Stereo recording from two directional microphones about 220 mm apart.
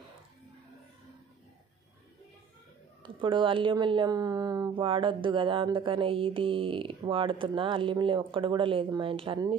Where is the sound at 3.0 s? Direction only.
20° right (ahead or behind).